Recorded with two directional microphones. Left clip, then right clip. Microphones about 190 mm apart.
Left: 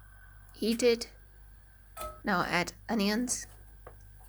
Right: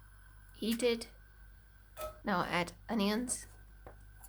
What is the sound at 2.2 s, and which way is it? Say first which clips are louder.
Speech: left 4 dB; 20° left (ahead or behind).